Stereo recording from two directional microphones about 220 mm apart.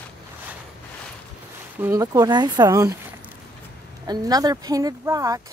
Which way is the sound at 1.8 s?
10° right (ahead or behind).